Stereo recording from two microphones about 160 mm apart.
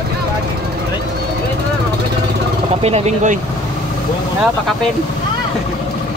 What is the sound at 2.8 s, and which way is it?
Speech, 45° right (ahead or behind).